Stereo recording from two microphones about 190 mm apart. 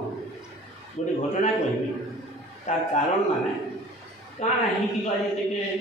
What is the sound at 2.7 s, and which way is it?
Speech, 35° left (ahead or behind).